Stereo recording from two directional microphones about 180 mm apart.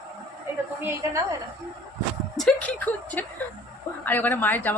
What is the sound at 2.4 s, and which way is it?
A woman's voice, 5° left (ahead or behind).